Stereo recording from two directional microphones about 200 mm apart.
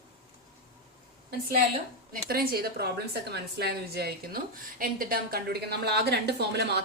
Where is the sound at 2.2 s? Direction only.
50° right (ahead or behind).